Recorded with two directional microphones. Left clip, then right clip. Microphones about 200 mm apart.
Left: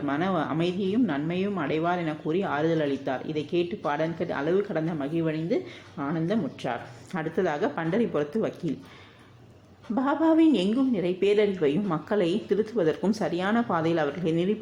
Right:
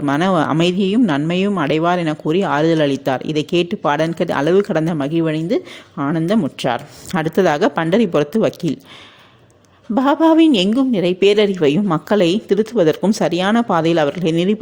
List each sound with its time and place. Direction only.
0.0 s speech: 55° right (ahead or behind)
9.9 s a woman's voice: 50° right (ahead or behind)